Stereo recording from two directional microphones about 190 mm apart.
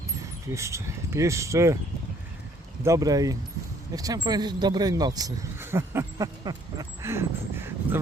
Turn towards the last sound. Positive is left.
turn(degrees=-15)  # may be behind; listen again after turning